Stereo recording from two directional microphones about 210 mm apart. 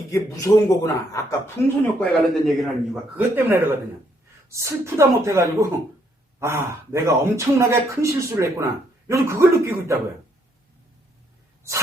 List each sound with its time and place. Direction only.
0.1 s speech: 15° left (ahead or behind)
2.0 s a man's voice: centre (ahead or behind)
4.4 s speech: 15° right (ahead or behind)